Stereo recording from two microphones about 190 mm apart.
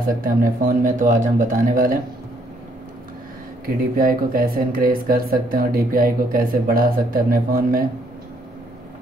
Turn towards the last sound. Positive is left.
turn(degrees=-50)  # may be behind; listen again after turning